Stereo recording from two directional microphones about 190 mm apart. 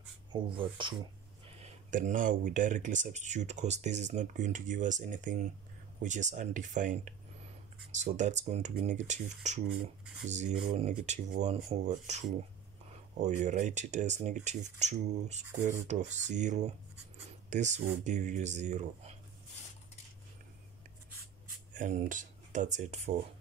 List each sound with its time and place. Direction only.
0.3 s speech: 25° right (ahead or behind)
1.6 s speech: 40° right (ahead or behind)
21.7 s speech: 40° right (ahead or behind)